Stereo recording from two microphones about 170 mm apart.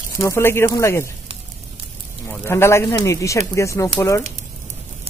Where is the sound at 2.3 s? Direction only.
15° left (ahead or behind).